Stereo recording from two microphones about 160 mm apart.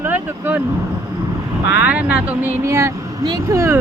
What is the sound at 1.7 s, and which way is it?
Speech, 10° right (ahead or behind).